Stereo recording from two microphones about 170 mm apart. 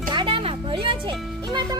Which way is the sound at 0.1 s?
30° right (ahead or behind).